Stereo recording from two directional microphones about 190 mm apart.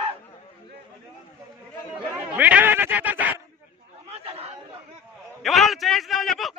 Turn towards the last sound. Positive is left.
turn(degrees=0)  # may be behind; listen again after turning